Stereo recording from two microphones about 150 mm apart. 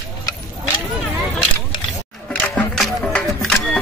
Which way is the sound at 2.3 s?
5° left (ahead or behind).